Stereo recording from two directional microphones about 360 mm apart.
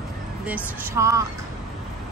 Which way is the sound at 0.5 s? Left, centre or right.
Centre.